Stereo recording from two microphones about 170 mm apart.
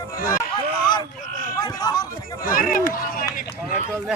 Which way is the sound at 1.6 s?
25° left (ahead or behind).